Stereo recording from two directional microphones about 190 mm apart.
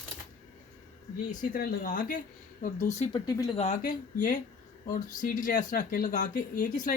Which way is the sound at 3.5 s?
35° left (ahead or behind).